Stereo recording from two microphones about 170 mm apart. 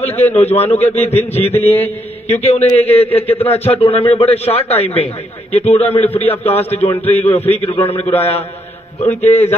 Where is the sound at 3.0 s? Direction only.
10° left (ahead or behind).